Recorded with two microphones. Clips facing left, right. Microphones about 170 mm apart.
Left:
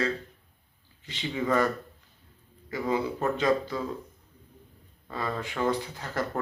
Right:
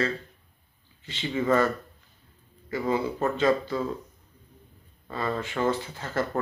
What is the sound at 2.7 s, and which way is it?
Speech, 15° left (ahead or behind).